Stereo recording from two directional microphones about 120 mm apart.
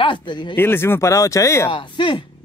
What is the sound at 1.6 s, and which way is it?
Speech, 45° left (ahead or behind).